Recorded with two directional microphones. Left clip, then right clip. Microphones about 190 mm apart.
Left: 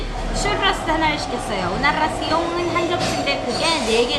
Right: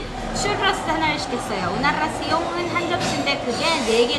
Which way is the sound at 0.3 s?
Centre (ahead or behind).